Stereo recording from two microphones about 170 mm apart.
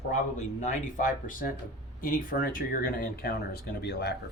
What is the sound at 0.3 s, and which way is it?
Speech, 45° left (ahead or behind).